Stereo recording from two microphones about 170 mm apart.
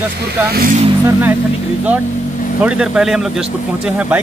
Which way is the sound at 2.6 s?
5° right (ahead or behind).